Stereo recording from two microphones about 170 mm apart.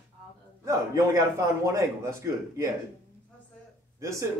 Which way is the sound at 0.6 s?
20° right (ahead or behind).